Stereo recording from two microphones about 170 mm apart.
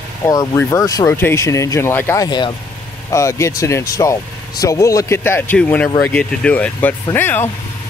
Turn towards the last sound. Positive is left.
turn(degrees=10)  # may be behind; listen again after turning